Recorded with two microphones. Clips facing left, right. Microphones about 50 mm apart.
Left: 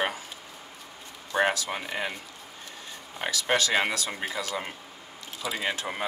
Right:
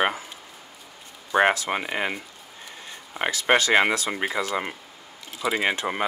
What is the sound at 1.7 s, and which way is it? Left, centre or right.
Speech, right.